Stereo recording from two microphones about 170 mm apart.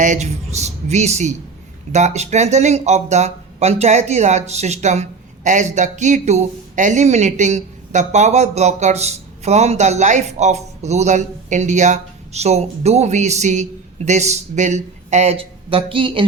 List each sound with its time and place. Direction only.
0.0 s speech: 45° right (ahead or behind)